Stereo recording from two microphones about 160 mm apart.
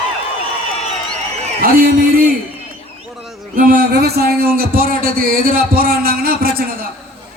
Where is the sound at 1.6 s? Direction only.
65° right (ahead or behind).